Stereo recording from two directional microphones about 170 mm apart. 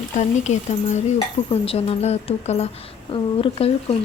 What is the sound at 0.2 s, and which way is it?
Speech, 45° left (ahead or behind).